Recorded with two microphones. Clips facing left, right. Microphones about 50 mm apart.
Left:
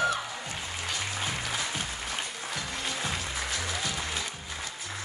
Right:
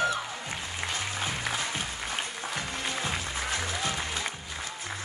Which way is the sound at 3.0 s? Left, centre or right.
Right.